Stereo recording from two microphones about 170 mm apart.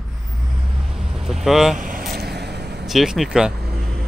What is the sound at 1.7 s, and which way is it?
Vehicle, 55° right (ahead or behind).